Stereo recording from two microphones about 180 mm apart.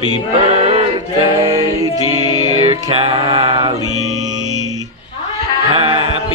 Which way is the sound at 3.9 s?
40° right (ahead or behind).